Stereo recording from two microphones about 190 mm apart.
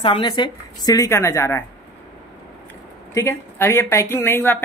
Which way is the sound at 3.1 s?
15° left (ahead or behind).